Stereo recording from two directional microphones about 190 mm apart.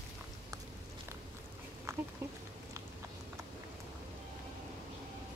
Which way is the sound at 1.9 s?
15° right (ahead or behind).